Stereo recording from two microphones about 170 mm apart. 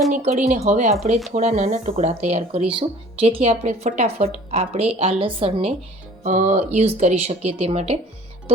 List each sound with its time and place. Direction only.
0.1 s speech: 45° right (ahead or behind)
6.2 s speech: 45° right (ahead or behind)